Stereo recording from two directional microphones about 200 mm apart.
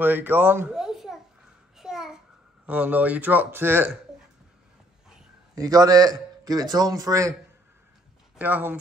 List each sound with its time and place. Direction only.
0.0 s a child's voice: 10° right (ahead or behind)
1.8 s a sound: centre (ahead or behind)
2.6 s a man's voice: 5° right (ahead or behind)
5.6 s a man's voice: 20° right (ahead or behind)
8.4 s a man's voice: 10° right (ahead or behind)